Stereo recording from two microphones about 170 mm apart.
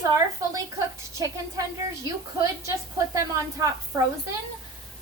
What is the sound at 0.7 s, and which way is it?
Speech, 20° right (ahead or behind).